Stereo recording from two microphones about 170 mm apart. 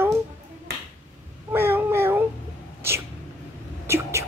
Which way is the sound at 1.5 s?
15° right (ahead or behind).